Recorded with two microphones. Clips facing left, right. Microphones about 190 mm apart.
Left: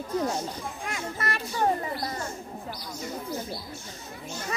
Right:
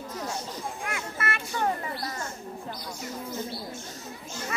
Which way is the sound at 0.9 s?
35° left (ahead or behind).